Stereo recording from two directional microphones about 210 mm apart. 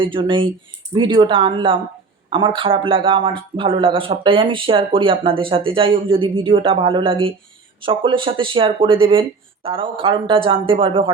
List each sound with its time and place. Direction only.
0.0 s speech: 25° right (ahead or behind)